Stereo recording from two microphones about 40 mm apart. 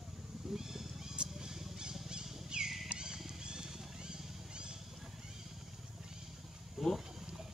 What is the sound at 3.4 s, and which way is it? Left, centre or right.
Vehicle, right.